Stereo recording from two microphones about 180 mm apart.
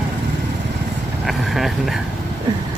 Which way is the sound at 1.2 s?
Centre (ahead or behind).